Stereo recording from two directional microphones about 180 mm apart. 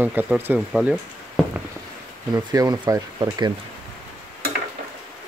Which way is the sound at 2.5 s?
20° right (ahead or behind).